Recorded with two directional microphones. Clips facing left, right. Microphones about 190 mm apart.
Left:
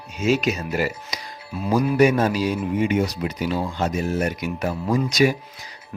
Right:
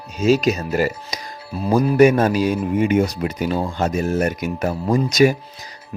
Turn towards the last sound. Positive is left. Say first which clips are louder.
# right 4 dB
turn(degrees=-45)  # may be behind; listen again after turning